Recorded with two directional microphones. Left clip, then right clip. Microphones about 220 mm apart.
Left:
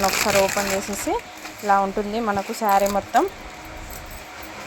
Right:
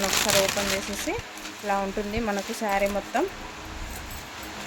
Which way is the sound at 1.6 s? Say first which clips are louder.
Left 8 dB; 10° left (ahead or behind).